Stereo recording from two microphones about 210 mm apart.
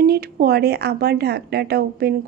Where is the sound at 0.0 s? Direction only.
45° right (ahead or behind).